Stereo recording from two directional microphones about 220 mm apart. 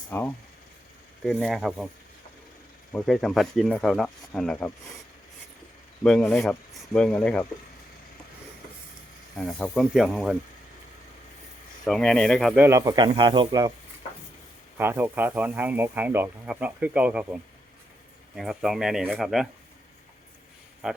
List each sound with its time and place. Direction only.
0.1 s speech: 10° left (ahead or behind)
1.2 s speech: centre (ahead or behind)
2.9 s speech: 5° left (ahead or behind)
6.0 s speech: 5° left (ahead or behind)
9.4 s speech: 5° left (ahead or behind)
11.9 s speech: 5° left (ahead or behind)
12.6 s speech: 15° right (ahead or behind)
14.8 s speech: 10° right (ahead or behind)
20.8 s speech: 5° right (ahead or behind)